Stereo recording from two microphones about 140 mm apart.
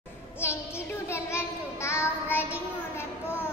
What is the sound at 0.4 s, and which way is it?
Child singing, 20° left (ahead or behind).